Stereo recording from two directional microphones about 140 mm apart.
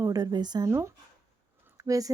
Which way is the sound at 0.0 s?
25° right (ahead or behind).